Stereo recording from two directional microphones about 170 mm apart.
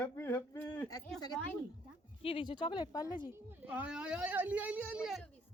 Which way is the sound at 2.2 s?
30° left (ahead or behind).